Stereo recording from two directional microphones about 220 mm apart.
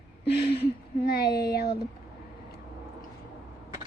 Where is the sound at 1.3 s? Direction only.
45° left (ahead or behind).